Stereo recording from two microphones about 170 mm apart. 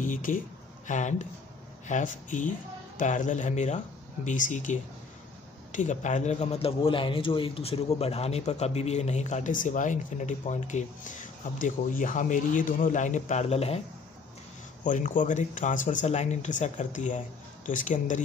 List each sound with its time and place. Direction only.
0.0 s a man's voice: 50° left (ahead or behind)
14.8 s a man's voice: 50° left (ahead or behind)